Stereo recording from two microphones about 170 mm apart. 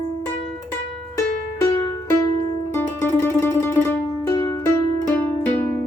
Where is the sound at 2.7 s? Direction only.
15° left (ahead or behind).